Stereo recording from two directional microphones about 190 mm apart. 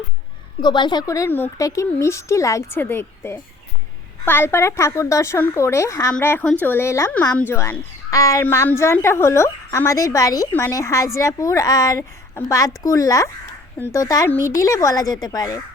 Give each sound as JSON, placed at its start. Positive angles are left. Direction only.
{"t": 0.6, "sound": "speech", "side_deg": 25}